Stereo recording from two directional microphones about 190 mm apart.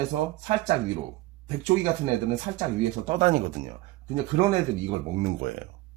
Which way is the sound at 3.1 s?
40° right (ahead or behind).